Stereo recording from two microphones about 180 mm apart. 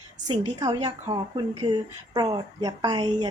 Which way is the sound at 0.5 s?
20° right (ahead or behind).